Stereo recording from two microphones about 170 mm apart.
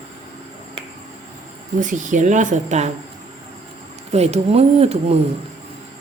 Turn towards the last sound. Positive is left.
turn(degrees=-40)  # may be behind; listen again after turning